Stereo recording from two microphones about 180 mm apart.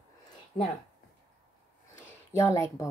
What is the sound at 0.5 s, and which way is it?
Speech, 50° left (ahead or behind).